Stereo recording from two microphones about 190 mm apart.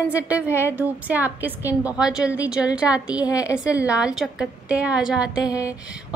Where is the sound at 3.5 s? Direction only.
5° right (ahead or behind).